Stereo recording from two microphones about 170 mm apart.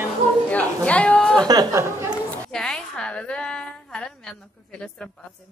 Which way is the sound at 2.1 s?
5° left (ahead or behind).